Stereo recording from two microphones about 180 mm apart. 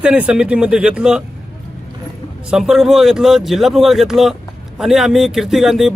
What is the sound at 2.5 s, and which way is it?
Speech, centre (ahead or behind).